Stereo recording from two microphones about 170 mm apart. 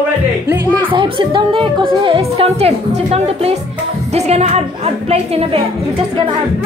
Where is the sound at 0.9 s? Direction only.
30° right (ahead or behind).